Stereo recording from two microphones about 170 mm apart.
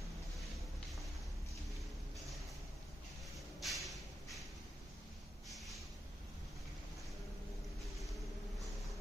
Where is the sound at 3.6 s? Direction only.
Centre (ahead or behind).